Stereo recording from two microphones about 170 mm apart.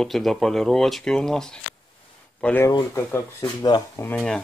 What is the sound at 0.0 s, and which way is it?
Speech, centre (ahead or behind).